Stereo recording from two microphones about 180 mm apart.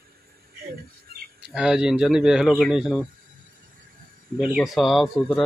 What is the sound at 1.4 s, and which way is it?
Speech, 5° right (ahead or behind).